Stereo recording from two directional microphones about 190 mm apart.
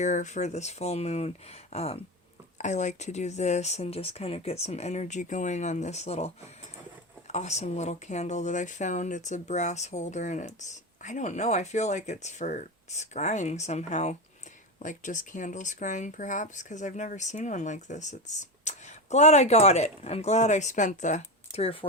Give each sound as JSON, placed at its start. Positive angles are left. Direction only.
{"t": 0.0, "sound": "speech", "side_deg": 40}